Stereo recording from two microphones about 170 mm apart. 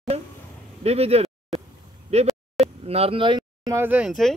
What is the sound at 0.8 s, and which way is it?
Speech, 35° right (ahead or behind).